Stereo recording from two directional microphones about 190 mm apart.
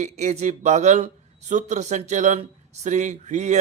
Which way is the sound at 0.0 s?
35° right (ahead or behind).